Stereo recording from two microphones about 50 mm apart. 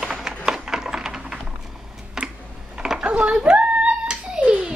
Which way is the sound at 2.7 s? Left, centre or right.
Centre.